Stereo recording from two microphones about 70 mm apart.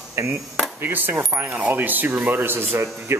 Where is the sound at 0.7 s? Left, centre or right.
Right.